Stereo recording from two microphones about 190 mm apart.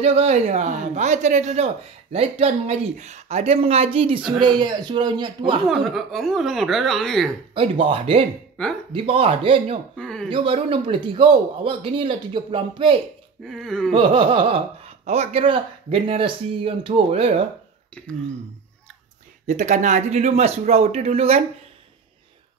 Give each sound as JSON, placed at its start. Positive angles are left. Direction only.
{"t": 0.0, "sound": "a man's voice", "side_deg": -35}
{"t": 5.7, "sound": "speech", "side_deg": 0}
{"t": 7.5, "sound": "a man's voice", "side_deg": -25}
{"t": 9.9, "sound": "speech", "side_deg": 5}
{"t": 10.3, "sound": "a man's voice", "side_deg": -25}
{"t": 13.4, "sound": "speech", "side_deg": 0}
{"t": 13.9, "sound": "a man's voice", "side_deg": -30}
{"t": 19.4, "sound": "speech", "side_deg": -40}